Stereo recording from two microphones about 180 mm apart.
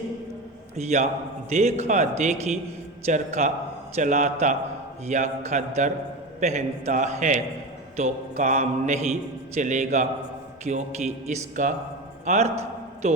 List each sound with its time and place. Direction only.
0.8 s a man's voice: 40° right (ahead or behind)